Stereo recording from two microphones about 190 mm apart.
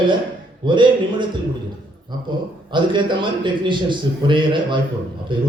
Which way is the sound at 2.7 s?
25° right (ahead or behind).